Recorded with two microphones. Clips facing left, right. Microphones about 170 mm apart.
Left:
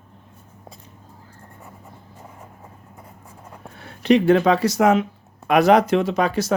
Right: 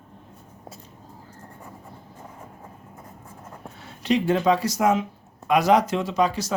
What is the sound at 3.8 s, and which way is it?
Speech, 60° left (ahead or behind).